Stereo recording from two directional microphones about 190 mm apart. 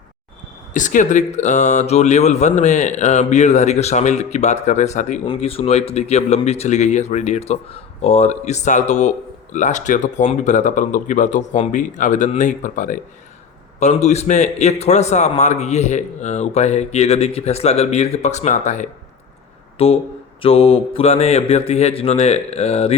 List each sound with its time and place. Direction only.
0.7 s speech: 40° left (ahead or behind)
5.2 s speech: 25° left (ahead or behind)